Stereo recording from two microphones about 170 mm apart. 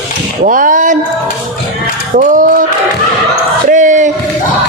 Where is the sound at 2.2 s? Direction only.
50° right (ahead or behind).